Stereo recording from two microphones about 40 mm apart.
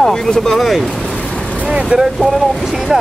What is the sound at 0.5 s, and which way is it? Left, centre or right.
Speech, centre.